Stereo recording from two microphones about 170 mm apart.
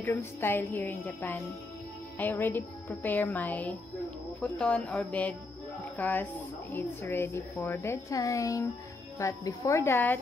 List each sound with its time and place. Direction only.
0.0 s a woman's voice: 10° left (ahead or behind)